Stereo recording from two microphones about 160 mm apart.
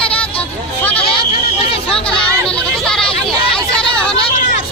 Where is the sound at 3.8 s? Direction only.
35° left (ahead or behind).